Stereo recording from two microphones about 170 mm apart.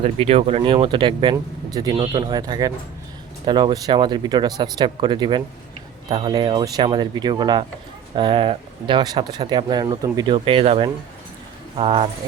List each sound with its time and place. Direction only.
0.0 s speech: 35° right (ahead or behind)